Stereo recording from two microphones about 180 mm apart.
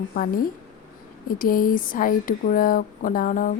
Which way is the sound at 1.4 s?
50° left (ahead or behind).